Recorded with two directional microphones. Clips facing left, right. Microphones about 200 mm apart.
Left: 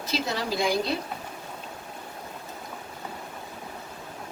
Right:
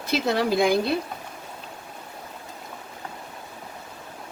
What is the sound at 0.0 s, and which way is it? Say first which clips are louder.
Speech: right 6 dB; 55° right (ahead or behind).